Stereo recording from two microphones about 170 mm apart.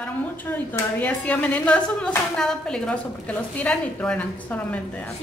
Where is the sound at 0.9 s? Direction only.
10° left (ahead or behind).